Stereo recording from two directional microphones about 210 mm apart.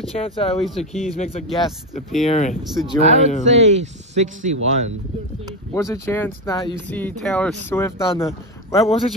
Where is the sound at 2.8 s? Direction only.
30° right (ahead or behind).